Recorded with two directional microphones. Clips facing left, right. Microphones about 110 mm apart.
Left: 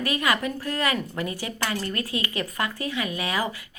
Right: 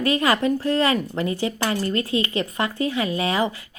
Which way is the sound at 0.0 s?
30° right (ahead or behind).